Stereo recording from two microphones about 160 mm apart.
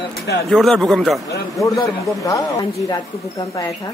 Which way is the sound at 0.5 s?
Centre (ahead or behind).